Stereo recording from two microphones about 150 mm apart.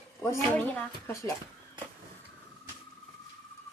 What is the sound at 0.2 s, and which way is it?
Speech, 15° left (ahead or behind).